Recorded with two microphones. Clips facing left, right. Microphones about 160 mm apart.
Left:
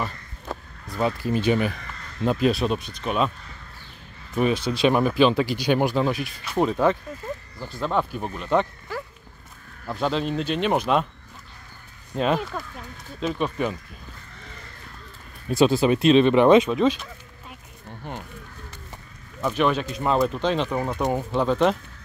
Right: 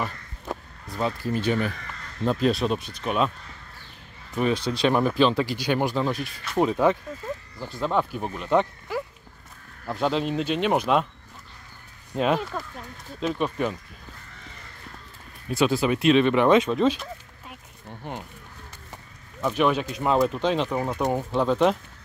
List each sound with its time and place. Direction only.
0.8 s speech: 10° left (ahead or behind)
4.4 s speech: 10° left (ahead or behind)
6.2 s speech: centre (ahead or behind)
12.1 s speech: 5° right (ahead or behind)
15.4 s speech: 30° left (ahead or behind)
19.5 s speech: 10° right (ahead or behind)